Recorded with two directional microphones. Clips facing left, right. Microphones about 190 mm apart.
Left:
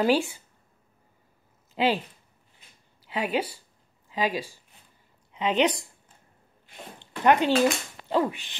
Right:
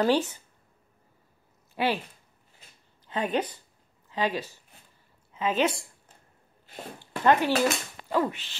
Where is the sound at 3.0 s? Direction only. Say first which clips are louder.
Even; 10° left (ahead or behind).